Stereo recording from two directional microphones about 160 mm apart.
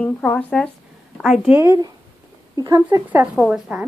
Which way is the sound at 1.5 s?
20° right (ahead or behind).